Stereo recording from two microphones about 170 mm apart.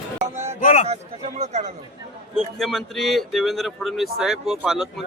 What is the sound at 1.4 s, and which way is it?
Speech, 45° right (ahead or behind).